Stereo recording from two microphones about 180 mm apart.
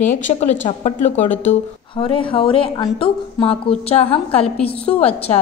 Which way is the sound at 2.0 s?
30° left (ahead or behind).